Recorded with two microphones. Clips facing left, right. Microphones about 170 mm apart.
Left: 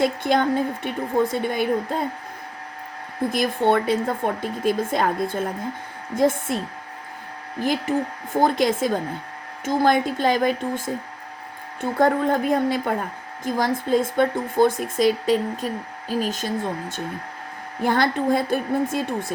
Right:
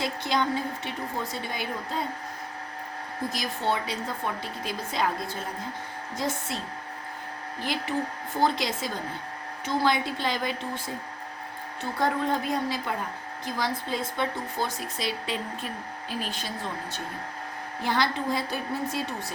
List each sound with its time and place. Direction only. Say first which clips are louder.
0.0 s a woman's voice: left 7 dB; 50° left (ahead or behind)
3.2 s a woman's voice: left 9 dB; 55° left (ahead or behind)
7.6 s a woman's voice: left 7 dB; 45° left (ahead or behind)
17.8 s a woman's voice: left 7 dB; 50° left (ahead or behind)